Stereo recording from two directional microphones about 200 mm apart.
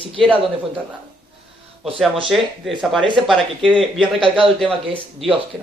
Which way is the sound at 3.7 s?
25° right (ahead or behind).